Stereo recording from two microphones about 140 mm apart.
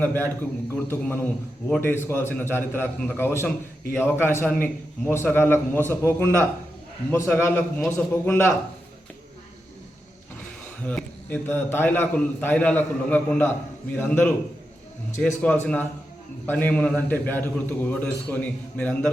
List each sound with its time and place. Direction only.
0.0 s a man's voice: 15° left (ahead or behind)
10.8 s a man's voice: 10° left (ahead or behind)